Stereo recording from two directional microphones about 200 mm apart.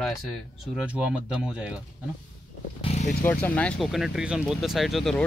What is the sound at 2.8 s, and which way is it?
Speech, 35° left (ahead or behind).